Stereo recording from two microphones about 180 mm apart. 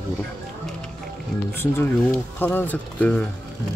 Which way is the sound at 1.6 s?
10° left (ahead or behind).